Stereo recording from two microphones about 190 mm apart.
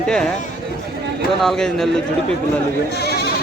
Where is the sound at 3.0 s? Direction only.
60° left (ahead or behind).